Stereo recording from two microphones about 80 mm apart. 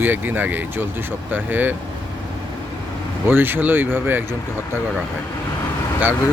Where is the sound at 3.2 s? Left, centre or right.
Right.